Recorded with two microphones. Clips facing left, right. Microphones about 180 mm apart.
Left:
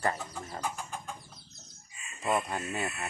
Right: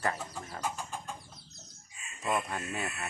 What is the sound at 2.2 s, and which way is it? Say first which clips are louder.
Chicken: left 2 dB; 15° left (ahead or behind).